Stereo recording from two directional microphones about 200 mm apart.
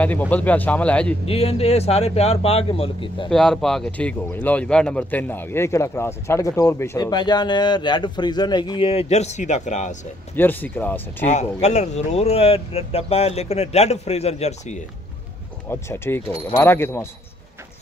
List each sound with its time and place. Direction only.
0.0 s speech: 5° left (ahead or behind)
1.2 s speech: 30° left (ahead or behind)
3.3 s speech: centre (ahead or behind); by 9.9 s 35° left (ahead or behind)
10.3 s speech: 10° left (ahead or behind)
11.2 s speech: 35° left (ahead or behind)
15.7 s speech: 10° left (ahead or behind)